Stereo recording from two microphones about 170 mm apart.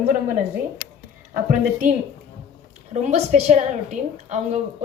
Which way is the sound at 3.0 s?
45° right (ahead or behind).